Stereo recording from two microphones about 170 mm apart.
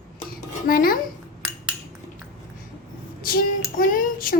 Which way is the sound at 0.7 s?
60° left (ahead or behind).